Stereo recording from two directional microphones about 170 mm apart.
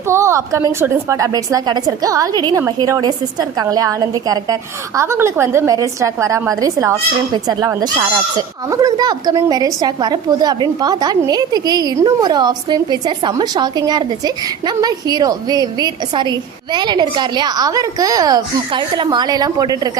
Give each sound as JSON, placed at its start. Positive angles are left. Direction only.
{"t": 0.1, "sound": "a woman's voice", "side_deg": -15}